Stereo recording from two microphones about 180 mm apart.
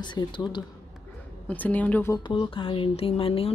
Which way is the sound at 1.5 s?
10° left (ahead or behind).